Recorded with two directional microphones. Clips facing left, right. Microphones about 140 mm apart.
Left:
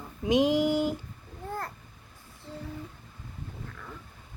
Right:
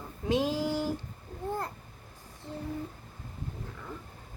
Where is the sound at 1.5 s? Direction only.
20° right (ahead or behind).